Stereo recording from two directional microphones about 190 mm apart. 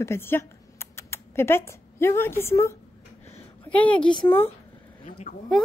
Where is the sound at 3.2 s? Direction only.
10° left (ahead or behind).